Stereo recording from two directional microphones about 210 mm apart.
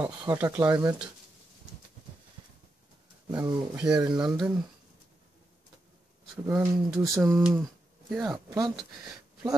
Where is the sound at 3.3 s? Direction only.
20° right (ahead or behind).